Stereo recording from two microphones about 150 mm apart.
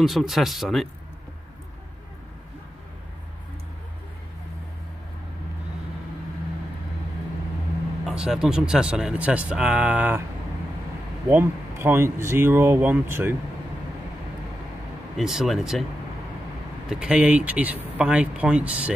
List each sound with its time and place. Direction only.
0.0 s speech: centre (ahead or behind)
8.0 s speech: 5° right (ahead or behind)
11.2 s speech: 15° right (ahead or behind)
15.1 s speech: centre (ahead or behind)
16.9 s speech: 5° right (ahead or behind)